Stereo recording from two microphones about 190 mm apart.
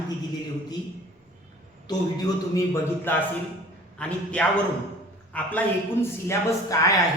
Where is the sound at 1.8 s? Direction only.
20° left (ahead or behind).